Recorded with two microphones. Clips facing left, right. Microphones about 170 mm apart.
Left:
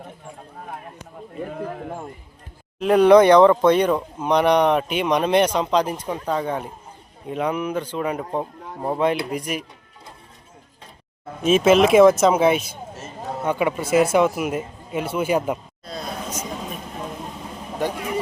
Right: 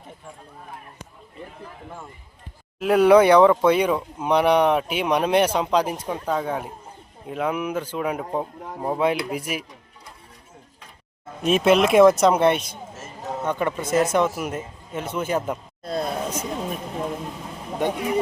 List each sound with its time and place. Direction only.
1.5 s a man's voice: 55° left (ahead or behind)
2.7 s speech: 5° right (ahead or behind)
11.4 s speech: centre (ahead or behind)
15.8 s a sound: 55° right (ahead or behind)